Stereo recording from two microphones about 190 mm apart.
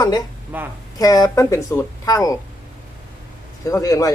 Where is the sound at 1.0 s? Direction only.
20° left (ahead or behind).